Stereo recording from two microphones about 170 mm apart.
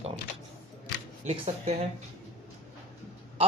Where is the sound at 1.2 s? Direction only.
40° right (ahead or behind).